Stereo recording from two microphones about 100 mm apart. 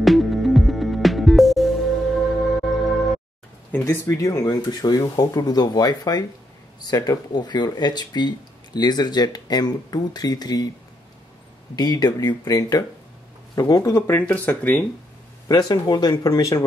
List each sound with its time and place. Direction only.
0.0 s music: centre (ahead or behind)
3.7 s speech: 25° left (ahead or behind)
4.6 s speech: 45° left (ahead or behind)
11.7 s speech: 40° left (ahead or behind)
13.9 s speech: 25° left (ahead or behind)
14.2 s speech: 15° left (ahead or behind)
15.4 s speech: 40° left (ahead or behind)